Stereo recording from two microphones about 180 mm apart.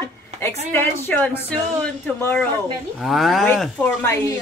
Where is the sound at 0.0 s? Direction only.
15° left (ahead or behind).